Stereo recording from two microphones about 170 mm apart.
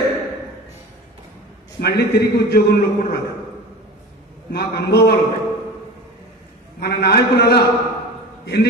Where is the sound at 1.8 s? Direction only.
70° left (ahead or behind).